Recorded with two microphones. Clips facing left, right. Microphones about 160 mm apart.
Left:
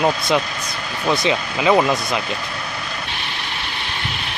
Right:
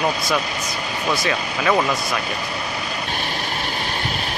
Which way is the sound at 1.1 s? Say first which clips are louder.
Left 4 dB; 20° left (ahead or behind).